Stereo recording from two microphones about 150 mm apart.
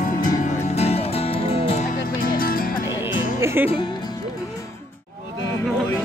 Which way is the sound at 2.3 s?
70° left (ahead or behind).